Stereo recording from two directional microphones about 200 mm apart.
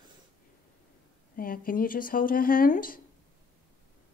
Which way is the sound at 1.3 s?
45° left (ahead or behind).